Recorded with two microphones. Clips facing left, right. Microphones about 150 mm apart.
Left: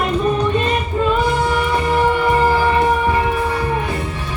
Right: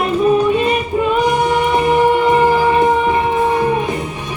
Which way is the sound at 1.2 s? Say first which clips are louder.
Right 3 dB; 20° right (ahead or behind).